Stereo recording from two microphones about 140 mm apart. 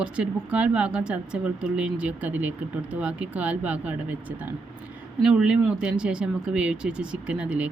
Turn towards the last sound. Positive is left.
turn(degrees=-10)  # may be behind; listen again after turning